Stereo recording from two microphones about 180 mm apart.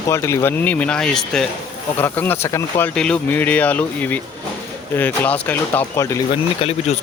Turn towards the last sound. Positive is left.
turn(degrees=35)  # may be behind; listen again after turning